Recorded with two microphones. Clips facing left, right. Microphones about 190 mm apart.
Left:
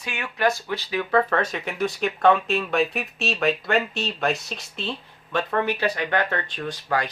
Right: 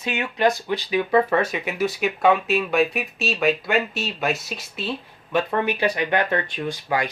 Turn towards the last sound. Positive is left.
turn(degrees=-10)  # may be behind; listen again after turning